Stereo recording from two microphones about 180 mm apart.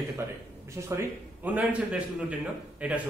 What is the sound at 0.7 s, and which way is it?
A man's voice, 15° right (ahead or behind).